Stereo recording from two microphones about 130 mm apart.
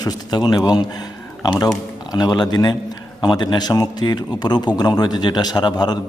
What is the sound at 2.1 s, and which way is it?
A man's voice, 30° left (ahead or behind).